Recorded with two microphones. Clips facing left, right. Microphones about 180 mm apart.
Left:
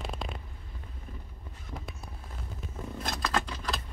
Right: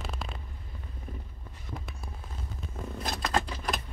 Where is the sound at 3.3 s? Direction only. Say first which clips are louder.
Right 4 dB; 20° right (ahead or behind).